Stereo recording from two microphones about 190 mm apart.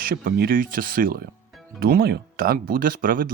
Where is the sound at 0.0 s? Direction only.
50° right (ahead or behind).